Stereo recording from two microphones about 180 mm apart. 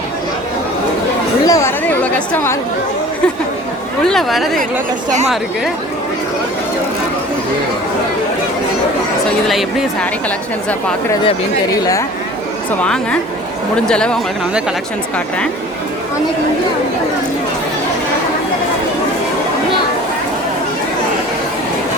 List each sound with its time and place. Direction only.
1.5 s speech: 15° left (ahead or behind)
4.0 s a woman's voice: centre (ahead or behind)
9.5 s a woman's voice: centre (ahead or behind)
11.2 s speech: 25° left (ahead or behind)
12.8 s a woman's voice: 5° left (ahead or behind)